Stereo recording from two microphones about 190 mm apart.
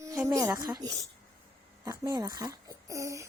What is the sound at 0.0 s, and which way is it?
A woman's voice, 15° right (ahead or behind).